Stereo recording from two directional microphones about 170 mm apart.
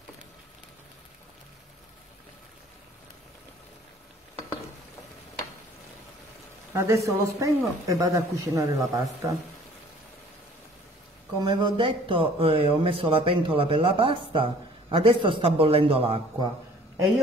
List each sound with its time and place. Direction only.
6.7 s speech: 15° right (ahead or behind)
11.4 s speech: 30° right (ahead or behind)